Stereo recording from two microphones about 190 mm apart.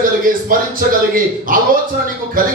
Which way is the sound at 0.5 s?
45° right (ahead or behind).